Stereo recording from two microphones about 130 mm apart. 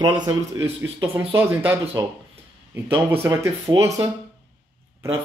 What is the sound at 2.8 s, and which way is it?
Speech, 15° right (ahead or behind).